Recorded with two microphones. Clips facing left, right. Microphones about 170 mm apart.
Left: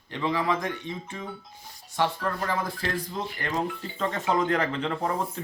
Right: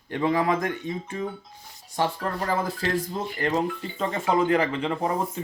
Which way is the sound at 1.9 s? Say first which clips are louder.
Right 1 dB; 35° right (ahead or behind).